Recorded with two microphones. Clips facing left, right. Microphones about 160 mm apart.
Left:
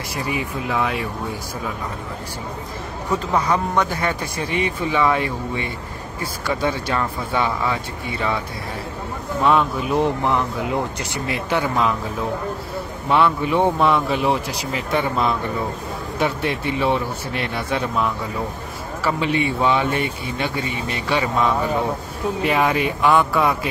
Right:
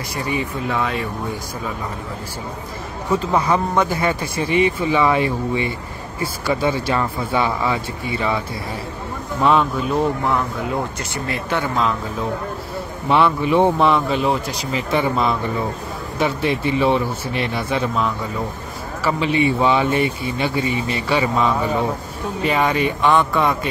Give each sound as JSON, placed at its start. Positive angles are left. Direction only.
{"t": 0.7, "sound": "speech", "side_deg": 5}
{"t": 3.1, "sound": "speech", "side_deg": -5}
{"t": 6.4, "sound": "speech", "side_deg": -5}
{"t": 9.4, "sound": "speech", "side_deg": 0}
{"t": 9.9, "sound": "speech", "side_deg": 20}
{"t": 13.1, "sound": "speech", "side_deg": 0}